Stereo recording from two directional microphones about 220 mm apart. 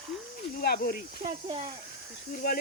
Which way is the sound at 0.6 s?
45° left (ahead or behind).